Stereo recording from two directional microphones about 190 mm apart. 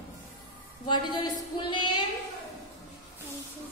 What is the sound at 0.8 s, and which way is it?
Speech, 25° left (ahead or behind).